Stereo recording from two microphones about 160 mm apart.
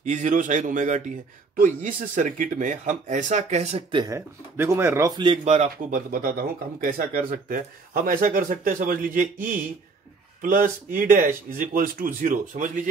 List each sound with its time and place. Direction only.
0.0 s speech: 50° right (ahead or behind)
3.9 s speech: 20° right (ahead or behind)
5.4 s speech: 45° right (ahead or behind)
5.9 s speech: 60° right (ahead or behind)